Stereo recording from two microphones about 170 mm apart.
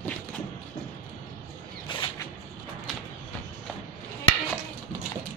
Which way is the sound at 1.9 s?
30° left (ahead or behind).